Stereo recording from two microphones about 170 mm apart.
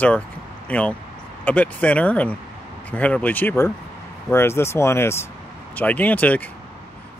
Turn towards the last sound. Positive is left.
turn(degrees=10)  # may be behind; listen again after turning